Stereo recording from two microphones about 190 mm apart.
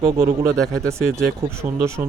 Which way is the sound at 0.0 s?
15° right (ahead or behind).